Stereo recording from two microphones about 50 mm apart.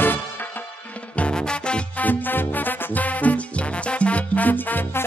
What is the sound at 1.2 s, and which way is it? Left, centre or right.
Music, centre.